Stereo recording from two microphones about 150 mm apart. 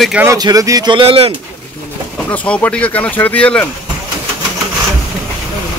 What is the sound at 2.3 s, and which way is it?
Speech, 10° left (ahead or behind).